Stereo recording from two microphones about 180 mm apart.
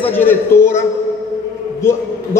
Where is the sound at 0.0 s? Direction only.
10° left (ahead or behind).